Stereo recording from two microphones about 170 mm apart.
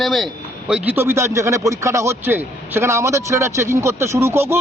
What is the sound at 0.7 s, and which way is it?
Speech, 10° right (ahead or behind).